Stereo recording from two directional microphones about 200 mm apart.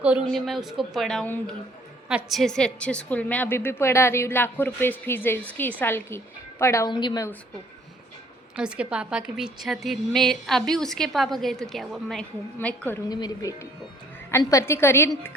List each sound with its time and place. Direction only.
0.0 s a woman's voice: 5° right (ahead or behind); by 7.3 s 20° left (ahead or behind)
8.5 s a woman's voice: 5° right (ahead or behind); by 15.4 s 10° left (ahead or behind)